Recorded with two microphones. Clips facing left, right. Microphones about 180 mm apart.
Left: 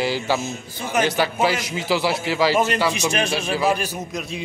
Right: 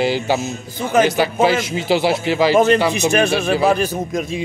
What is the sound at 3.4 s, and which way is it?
Speech, 55° right (ahead or behind).